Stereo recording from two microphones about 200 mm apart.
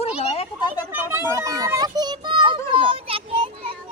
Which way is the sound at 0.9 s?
10° right (ahead or behind).